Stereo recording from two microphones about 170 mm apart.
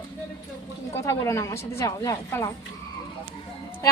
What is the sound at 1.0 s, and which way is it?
A woman's voice, 20° left (ahead or behind).